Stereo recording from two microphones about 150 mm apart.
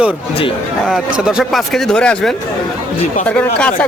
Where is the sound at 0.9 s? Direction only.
5° right (ahead or behind).